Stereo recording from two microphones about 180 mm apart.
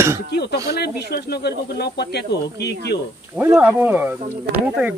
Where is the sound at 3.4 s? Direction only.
10° right (ahead or behind).